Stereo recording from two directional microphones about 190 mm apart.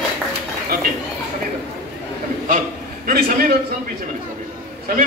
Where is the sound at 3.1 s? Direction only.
50° right (ahead or behind).